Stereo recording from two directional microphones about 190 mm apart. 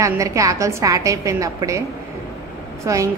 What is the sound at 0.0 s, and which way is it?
A woman's voice, 15° right (ahead or behind).